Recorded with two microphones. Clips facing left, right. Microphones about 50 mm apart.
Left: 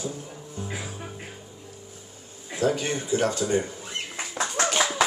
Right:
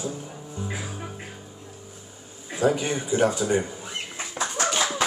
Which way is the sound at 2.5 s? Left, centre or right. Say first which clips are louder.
Right 2 dB; centre.